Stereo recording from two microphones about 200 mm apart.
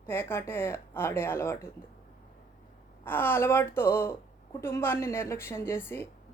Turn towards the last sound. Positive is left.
turn(degrees=10)  # may be behind; listen again after turning